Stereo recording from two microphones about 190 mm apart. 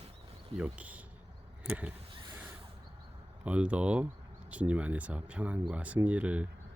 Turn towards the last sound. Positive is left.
turn(degrees=-5)  # may be behind; listen again after turning